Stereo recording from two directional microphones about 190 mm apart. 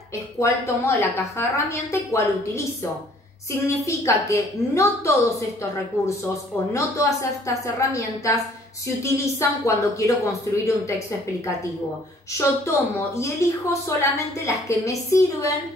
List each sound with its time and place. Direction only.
0.4 s a woman's voice: 15° left (ahead or behind)
12.4 s a woman's voice: 15° left (ahead or behind)